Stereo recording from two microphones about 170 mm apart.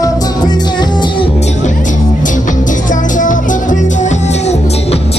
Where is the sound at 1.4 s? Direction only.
45° left (ahead or behind).